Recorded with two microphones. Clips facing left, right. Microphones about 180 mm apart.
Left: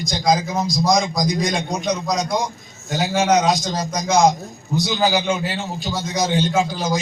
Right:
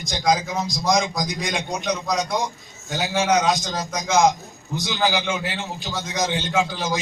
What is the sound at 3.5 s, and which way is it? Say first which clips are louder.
Speech: left 3 dB; 35° left (ahead or behind).